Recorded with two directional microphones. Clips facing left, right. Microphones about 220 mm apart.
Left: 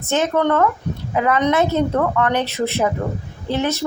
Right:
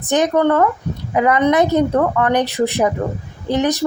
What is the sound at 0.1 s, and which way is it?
A woman's voice, 15° right (ahead or behind).